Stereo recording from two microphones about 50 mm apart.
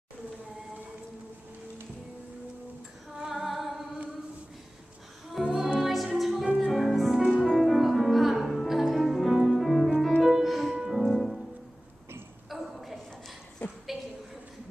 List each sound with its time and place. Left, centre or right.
3.2 s female singing: centre
5.4 s music: centre
6.4 s music: centre
6.7 s music: centre
12.4 s a sound: centre